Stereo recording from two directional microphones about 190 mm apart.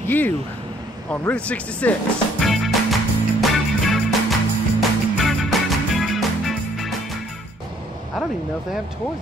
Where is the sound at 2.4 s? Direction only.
Centre (ahead or behind).